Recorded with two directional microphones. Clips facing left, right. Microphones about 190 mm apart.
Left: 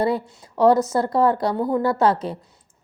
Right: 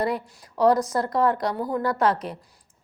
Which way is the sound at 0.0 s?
30° left (ahead or behind).